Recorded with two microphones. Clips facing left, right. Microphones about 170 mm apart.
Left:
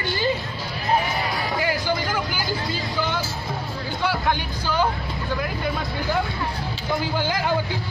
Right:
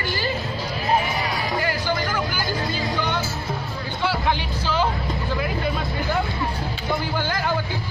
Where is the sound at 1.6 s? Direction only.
15° left (ahead or behind).